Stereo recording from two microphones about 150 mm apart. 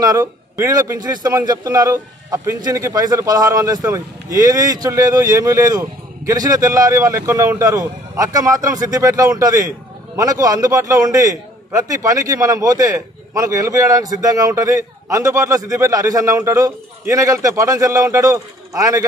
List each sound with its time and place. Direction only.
0.0 s a man's voice: 25° right (ahead or behind)